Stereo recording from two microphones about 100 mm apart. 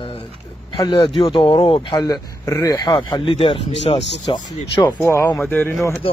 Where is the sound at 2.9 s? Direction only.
55° left (ahead or behind); by 4.0 s 85° left.